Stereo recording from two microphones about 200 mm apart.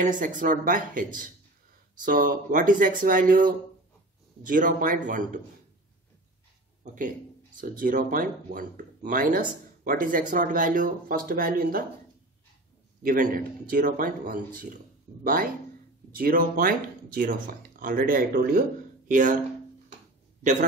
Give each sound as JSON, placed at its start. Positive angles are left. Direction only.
{"t": 0.2, "sound": "speech", "side_deg": -40}
{"t": 6.8, "sound": "speech", "side_deg": -40}
{"t": 13.0, "sound": "speech", "side_deg": -45}
{"t": 16.2, "sound": "speech", "side_deg": -45}